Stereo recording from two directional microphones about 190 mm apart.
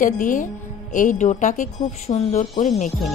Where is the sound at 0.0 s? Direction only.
45° left (ahead or behind).